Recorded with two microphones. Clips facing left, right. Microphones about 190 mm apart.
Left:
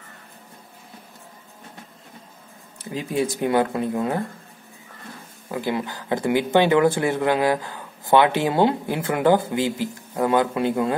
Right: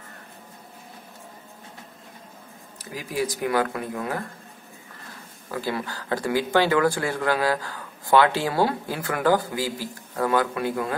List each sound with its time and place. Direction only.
2.8 s speech: 25° left (ahead or behind)
5.5 s speech: 20° left (ahead or behind)